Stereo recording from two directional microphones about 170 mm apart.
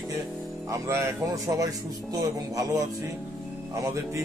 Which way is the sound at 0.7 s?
20° right (ahead or behind).